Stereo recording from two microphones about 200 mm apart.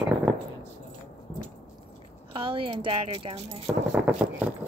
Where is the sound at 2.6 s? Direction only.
25° right (ahead or behind).